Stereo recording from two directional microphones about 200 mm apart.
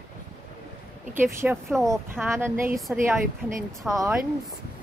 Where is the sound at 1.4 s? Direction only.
5° right (ahead or behind).